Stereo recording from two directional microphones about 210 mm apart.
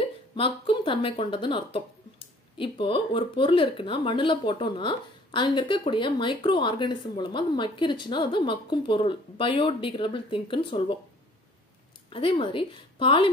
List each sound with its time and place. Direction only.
0.4 s speech: 25° left (ahead or behind)
12.1 s speech: 25° left (ahead or behind)